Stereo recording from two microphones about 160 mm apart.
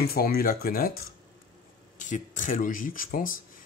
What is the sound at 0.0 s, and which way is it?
Speech, 70° left (ahead or behind).